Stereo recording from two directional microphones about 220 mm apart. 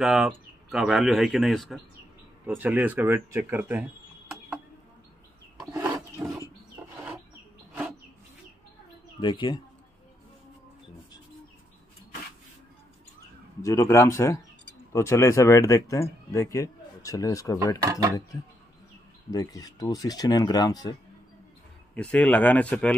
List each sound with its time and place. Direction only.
0.0 s speech: centre (ahead or behind)
5.7 s rub: 15° right (ahead or behind)
9.2 s speech: 20° left (ahead or behind)
13.6 s speech: 15° left (ahead or behind)
19.3 s speech: 15° left (ahead or behind)
21.9 s speech: 5° left (ahead or behind)